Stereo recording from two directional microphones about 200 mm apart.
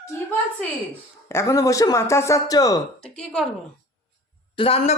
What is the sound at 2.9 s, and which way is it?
Speech, 5° left (ahead or behind).